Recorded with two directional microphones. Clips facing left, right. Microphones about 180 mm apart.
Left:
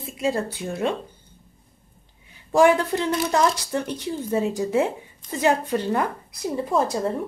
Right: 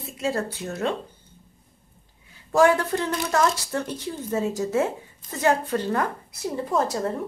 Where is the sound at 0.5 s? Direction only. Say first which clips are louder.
Left 2 dB; 10° left (ahead or behind).